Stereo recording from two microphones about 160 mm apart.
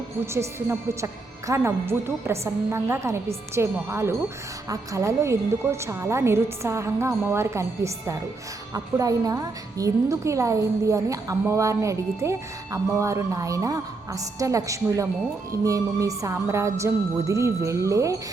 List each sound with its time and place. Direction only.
0.3 s a woman's voice: 20° right (ahead or behind)